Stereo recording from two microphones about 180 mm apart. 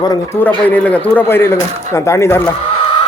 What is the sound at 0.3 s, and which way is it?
Speech, 10° left (ahead or behind).